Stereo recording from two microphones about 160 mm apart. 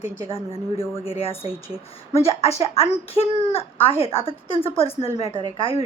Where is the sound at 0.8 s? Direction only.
15° left (ahead or behind).